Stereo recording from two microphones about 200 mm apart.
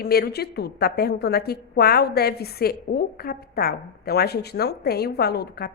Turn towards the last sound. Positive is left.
turn(degrees=50)  # may be behind; listen again after turning